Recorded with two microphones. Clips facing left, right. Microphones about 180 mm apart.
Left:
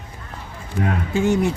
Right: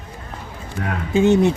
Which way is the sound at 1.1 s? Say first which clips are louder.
Right 5 dB; 20° right (ahead or behind).